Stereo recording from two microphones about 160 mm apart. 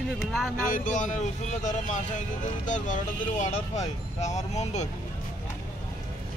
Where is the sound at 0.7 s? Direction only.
50° left (ahead or behind).